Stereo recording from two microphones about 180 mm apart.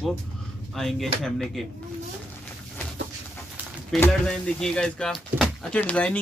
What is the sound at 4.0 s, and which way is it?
Speech, 5° left (ahead or behind).